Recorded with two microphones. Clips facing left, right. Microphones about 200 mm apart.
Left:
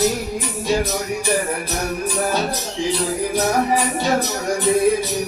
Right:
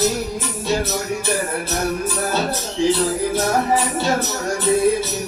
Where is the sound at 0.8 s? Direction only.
15° left (ahead or behind).